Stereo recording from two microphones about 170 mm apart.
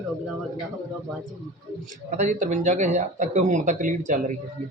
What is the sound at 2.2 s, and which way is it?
Speech, 50° right (ahead or behind).